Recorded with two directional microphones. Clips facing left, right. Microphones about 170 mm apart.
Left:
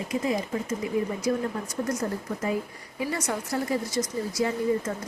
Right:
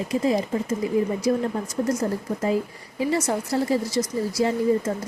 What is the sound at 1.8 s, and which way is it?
Speech, 30° right (ahead or behind).